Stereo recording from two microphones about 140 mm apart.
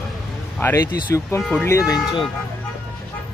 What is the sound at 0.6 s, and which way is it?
Speech, 20° left (ahead or behind).